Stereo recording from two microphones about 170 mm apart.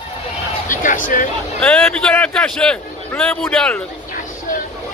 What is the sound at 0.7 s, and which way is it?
Speech, 50° left (ahead or behind).